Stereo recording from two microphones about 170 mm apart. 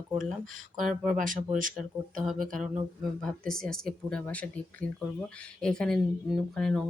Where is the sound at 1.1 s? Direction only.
50° right (ahead or behind).